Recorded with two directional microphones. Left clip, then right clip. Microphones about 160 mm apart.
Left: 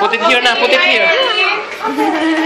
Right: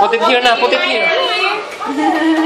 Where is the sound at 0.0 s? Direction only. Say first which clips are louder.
Even; 40° right (ahead or behind).